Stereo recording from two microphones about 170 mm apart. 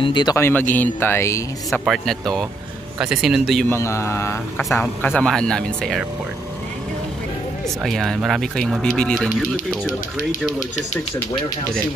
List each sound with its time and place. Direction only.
0.0 s speech: 25° left (ahead or behind)
1.7 s speech: centre (ahead or behind)
3.6 s speech: 15° left (ahead or behind)
7.6 s speech: centre (ahead or behind)